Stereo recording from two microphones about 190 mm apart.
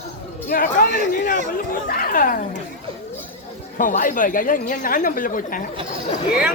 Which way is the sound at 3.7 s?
45° left (ahead or behind).